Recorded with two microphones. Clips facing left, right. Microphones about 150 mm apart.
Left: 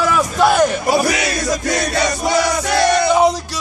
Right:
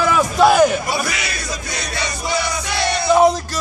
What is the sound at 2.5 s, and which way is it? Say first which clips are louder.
Battle cry: left 7 dB; 50° left (ahead or behind).